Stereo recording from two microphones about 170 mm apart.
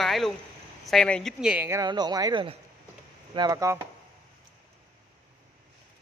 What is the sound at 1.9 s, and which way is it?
Speech, 25° right (ahead or behind).